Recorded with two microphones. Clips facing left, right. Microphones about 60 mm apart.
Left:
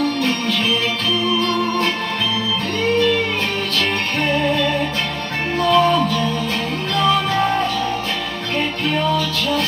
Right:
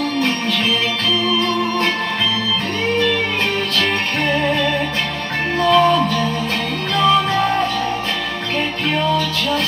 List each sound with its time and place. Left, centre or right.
4.4 s music: centre